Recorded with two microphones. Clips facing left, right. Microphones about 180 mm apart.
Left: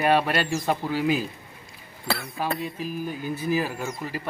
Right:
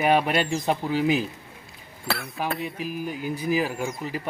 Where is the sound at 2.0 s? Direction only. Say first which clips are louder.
Left 1 dB; centre (ahead or behind).